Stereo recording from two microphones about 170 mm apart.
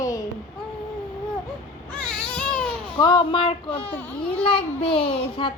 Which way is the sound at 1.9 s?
5° left (ahead or behind).